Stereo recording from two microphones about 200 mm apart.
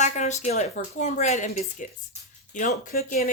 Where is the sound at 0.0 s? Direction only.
35° left (ahead or behind).